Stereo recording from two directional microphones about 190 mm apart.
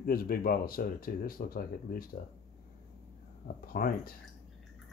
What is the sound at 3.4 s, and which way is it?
Speech, 50° left (ahead or behind).